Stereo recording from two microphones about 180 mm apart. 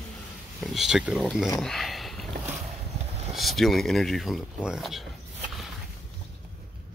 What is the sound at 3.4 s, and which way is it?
Speech, centre (ahead or behind).